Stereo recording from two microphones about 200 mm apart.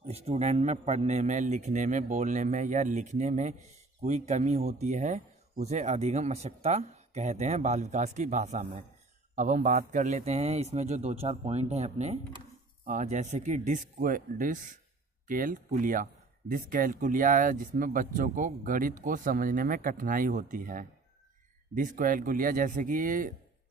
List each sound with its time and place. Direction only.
0.1 s a man's voice: 30° right (ahead or behind)